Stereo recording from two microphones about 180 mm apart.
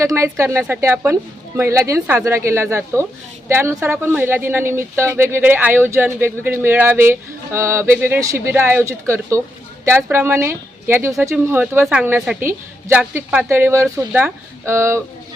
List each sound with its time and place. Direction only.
0.0 s speech: 15° right (ahead or behind)